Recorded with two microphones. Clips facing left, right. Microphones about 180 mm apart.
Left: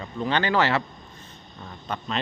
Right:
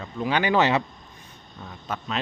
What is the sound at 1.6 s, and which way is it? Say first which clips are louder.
Speech: even; 5° right (ahead or behind).